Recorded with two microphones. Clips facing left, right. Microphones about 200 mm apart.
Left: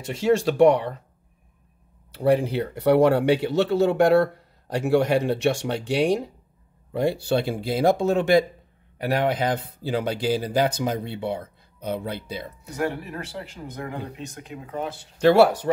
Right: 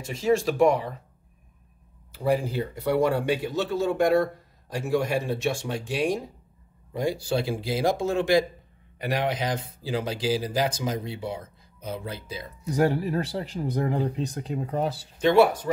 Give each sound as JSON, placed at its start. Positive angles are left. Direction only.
{"t": 0.2, "sound": "speech", "side_deg": 70}
{"t": 2.1, "sound": "speech", "side_deg": 70}
{"t": 12.7, "sound": "speech", "side_deg": -35}
{"t": 15.1, "sound": "speech", "side_deg": 75}